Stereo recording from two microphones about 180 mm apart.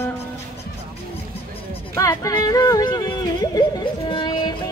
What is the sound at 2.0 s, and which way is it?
Speech, 20° left (ahead or behind).